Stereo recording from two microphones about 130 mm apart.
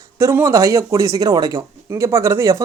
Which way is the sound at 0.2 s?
20° right (ahead or behind).